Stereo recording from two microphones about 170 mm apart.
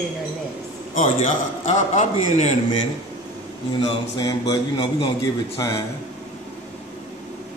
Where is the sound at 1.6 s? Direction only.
45° left (ahead or behind).